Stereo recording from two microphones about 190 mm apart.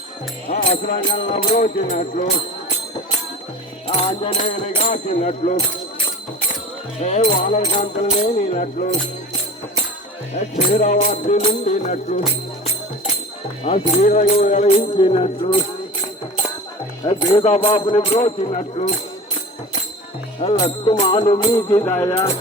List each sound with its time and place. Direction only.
0.4 s speech: 30° left (ahead or behind)
3.8 s speech: 30° left (ahead or behind)
7.0 s speech: 35° left (ahead or behind)
10.8 s speech: 40° left (ahead or behind)
13.7 s speech: 35° left (ahead or behind)
17.0 s speech: 25° left (ahead or behind)
20.4 s speech: 25° left (ahead or behind); by 22.3 s 10° left (ahead or behind)